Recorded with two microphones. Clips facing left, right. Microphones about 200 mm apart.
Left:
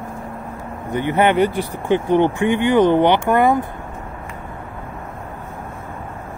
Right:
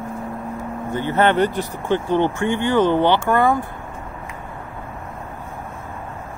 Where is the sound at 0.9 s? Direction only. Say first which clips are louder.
Left 2 dB; 15° left (ahead or behind).